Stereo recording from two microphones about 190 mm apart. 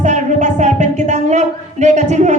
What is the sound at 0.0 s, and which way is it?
Speech, 40° right (ahead or behind).